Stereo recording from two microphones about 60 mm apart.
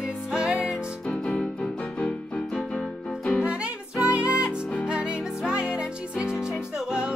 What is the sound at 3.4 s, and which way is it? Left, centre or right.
Music, centre.